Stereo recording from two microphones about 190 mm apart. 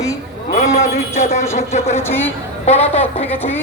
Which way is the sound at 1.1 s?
35° left (ahead or behind).